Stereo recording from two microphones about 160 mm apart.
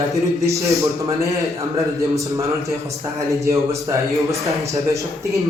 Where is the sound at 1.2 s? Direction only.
20° right (ahead or behind).